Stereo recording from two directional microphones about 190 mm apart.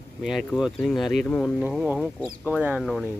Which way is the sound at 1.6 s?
5° right (ahead or behind).